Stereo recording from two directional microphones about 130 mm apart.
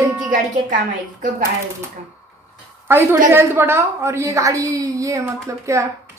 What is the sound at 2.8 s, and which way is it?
Speech, 15° right (ahead or behind).